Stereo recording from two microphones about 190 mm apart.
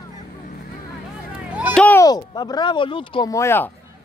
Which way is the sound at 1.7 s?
5° left (ahead or behind).